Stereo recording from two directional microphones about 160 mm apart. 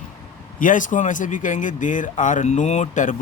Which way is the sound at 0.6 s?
55° left (ahead or behind).